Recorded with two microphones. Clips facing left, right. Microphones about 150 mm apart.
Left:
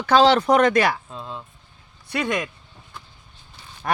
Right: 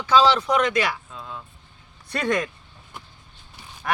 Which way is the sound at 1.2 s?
25° left (ahead or behind).